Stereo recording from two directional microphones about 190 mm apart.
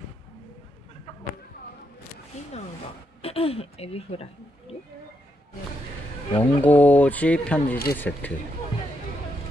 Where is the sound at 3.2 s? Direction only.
30° left (ahead or behind).